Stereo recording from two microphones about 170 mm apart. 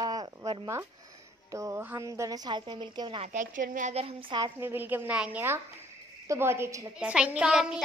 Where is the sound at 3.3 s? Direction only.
50° right (ahead or behind); by 4.5 s 30° right (ahead or behind).